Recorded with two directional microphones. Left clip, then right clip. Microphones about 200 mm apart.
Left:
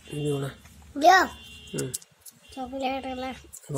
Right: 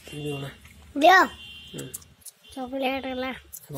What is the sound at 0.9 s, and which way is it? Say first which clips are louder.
Speech: right 2 dB; 15° right (ahead or behind).